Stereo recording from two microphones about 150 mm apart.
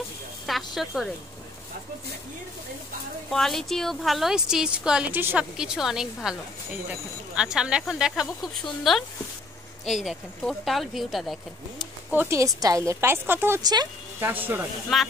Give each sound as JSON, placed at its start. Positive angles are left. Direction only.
{"t": 0.5, "sound": "a woman's voice", "side_deg": 0}
{"t": 3.3, "sound": "a woman's voice", "side_deg": 0}
{"t": 12.1, "sound": "a woman's voice", "side_deg": -15}
{"t": 13.6, "sound": "speech", "side_deg": -25}
{"t": 14.2, "sound": "a woman's voice", "side_deg": -15}
{"t": 14.9, "sound": "a woman's voice", "side_deg": 0}